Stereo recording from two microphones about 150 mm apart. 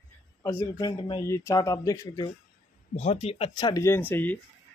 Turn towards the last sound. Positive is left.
turn(degrees=15)  # may be behind; listen again after turning